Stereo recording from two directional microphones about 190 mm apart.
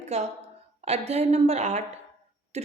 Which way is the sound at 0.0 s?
35° right (ahead or behind).